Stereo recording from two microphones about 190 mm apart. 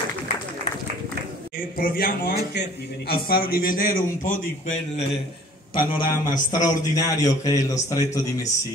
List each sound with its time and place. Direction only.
1.8 s speech: 50° left (ahead or behind)
5.8 s a man's voice: 20° left (ahead or behind)